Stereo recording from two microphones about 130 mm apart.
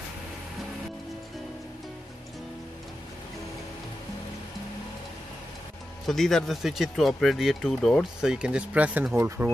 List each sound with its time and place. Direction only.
6.0 s speech: centre (ahead or behind); by 9.5 s 15° right (ahead or behind)